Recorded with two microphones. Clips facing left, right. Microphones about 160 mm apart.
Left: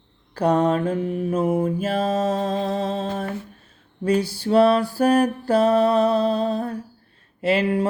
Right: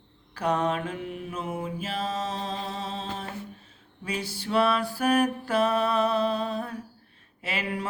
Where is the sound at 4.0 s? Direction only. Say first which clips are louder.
Left 12 dB; 40° left (ahead or behind).